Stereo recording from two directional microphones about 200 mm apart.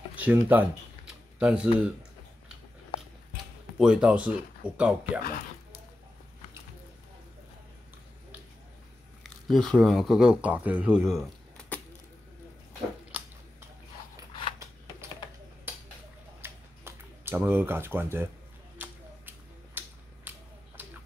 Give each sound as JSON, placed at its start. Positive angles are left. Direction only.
{"t": 0.1, "sound": "typing", "side_deg": -10}
{"t": 3.7, "sound": "speech", "side_deg": -5}
{"t": 5.2, "sound": "music", "side_deg": 45}
{"t": 9.2, "sound": "speech", "side_deg": 0}
{"t": 16.3, "sound": "a sound", "side_deg": -10}